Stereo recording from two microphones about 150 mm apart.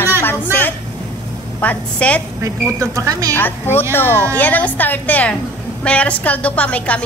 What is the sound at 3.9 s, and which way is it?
A woman's voice, 15° left (ahead or behind).